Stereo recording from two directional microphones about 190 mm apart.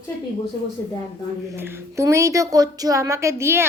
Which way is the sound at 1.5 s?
15° right (ahead or behind).